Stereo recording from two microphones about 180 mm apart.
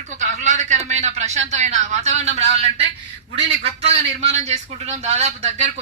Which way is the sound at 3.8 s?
35° right (ahead or behind).